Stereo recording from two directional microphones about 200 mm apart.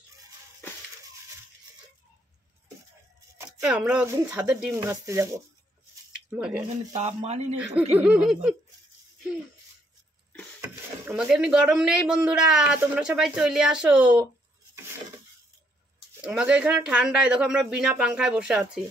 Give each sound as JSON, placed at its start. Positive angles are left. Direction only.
{"t": 3.6, "sound": "speech", "side_deg": -5}
{"t": 4.7, "sound": "laughter", "side_deg": -15}
{"t": 6.9, "sound": "speech", "side_deg": -35}
{"t": 7.9, "sound": "laughter", "side_deg": -5}
{"t": 10.6, "sound": "speech", "side_deg": -5}
{"t": 16.2, "sound": "speech", "side_deg": -5}